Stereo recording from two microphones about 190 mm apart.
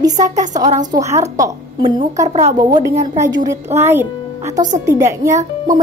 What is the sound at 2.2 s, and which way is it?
Speech, 35° right (ahead or behind).